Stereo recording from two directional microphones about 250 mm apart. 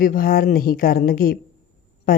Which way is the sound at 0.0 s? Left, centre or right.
Left.